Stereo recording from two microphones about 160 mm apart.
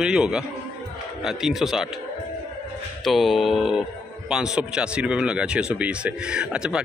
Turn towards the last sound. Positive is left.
turn(degrees=-5)  # may be behind; listen again after turning